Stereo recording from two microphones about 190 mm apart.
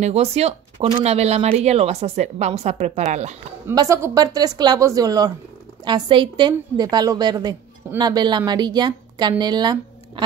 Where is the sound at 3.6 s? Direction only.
15° right (ahead or behind).